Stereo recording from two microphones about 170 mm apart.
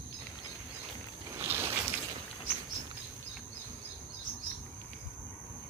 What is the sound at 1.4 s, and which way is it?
Boat, 15° right (ahead or behind).